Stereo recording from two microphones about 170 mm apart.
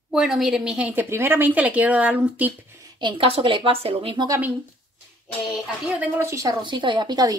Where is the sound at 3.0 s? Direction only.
30° right (ahead or behind).